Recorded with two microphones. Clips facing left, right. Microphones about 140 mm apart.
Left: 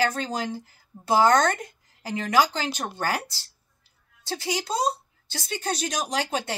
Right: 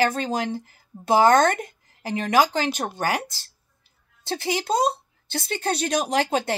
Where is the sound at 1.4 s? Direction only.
55° right (ahead or behind).